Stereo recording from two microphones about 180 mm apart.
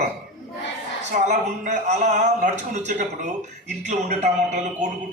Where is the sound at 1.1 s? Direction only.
45° right (ahead or behind).